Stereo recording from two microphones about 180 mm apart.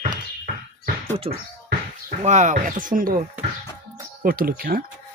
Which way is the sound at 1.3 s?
35° right (ahead or behind).